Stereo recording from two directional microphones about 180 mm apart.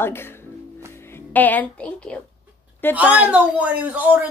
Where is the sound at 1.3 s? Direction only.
10° left (ahead or behind).